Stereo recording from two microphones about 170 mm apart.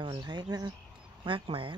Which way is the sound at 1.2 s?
30° right (ahead or behind).